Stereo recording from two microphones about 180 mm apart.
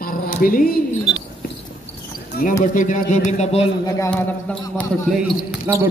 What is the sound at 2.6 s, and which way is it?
Speech, 45° left (ahead or behind).